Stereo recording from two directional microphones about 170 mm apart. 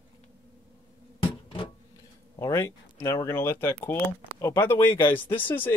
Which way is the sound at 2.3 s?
20° left (ahead or behind).